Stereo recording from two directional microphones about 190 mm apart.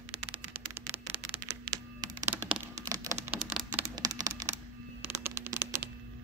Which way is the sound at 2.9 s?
15° right (ahead or behind).